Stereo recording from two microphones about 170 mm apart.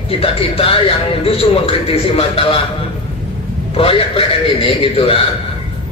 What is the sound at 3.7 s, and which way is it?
A man's voice, 35° left (ahead or behind).